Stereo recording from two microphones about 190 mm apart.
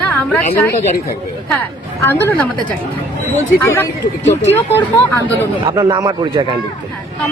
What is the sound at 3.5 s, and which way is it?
Speech, 10° left (ahead or behind).